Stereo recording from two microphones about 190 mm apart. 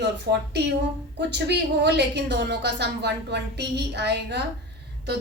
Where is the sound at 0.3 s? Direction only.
60° right (ahead or behind).